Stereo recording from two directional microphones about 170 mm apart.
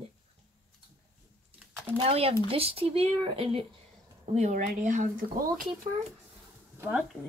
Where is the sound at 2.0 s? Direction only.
35° right (ahead or behind).